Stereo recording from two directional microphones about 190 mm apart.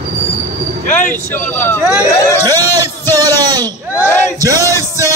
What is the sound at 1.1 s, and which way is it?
Speech, 10° left (ahead or behind).